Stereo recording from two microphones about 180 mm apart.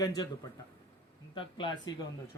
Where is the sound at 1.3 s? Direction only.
25° left (ahead or behind).